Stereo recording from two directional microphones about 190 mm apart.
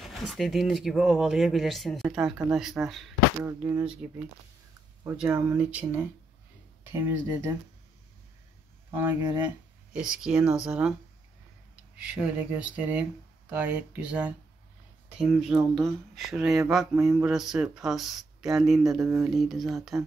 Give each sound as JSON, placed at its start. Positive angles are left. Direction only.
{"t": 0.0, "sound": "speech", "side_deg": 0}
{"t": 3.6, "sound": "speech", "side_deg": -15}
{"t": 5.0, "sound": "speech", "side_deg": -5}
{"t": 8.9, "sound": "speech", "side_deg": -15}
{"t": 9.9, "sound": "speech", "side_deg": -5}
{"t": 12.1, "sound": "speech", "side_deg": -5}
{"t": 18.9, "sound": "speech", "side_deg": -15}
{"t": 19.2, "sound": "speech", "side_deg": 0}